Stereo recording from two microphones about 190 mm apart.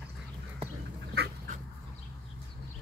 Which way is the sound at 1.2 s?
60° right (ahead or behind).